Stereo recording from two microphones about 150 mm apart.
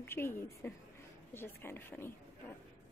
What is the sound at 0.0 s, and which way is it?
Speech, 15° left (ahead or behind).